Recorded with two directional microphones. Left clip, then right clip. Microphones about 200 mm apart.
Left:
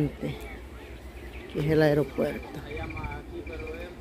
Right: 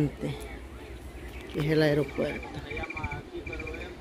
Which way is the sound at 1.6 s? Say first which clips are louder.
Left 2 dB; 10° left (ahead or behind).